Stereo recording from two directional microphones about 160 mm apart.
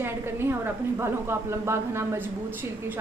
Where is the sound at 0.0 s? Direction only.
15° right (ahead or behind).